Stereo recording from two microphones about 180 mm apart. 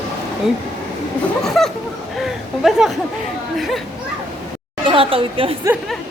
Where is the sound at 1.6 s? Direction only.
Centre (ahead or behind).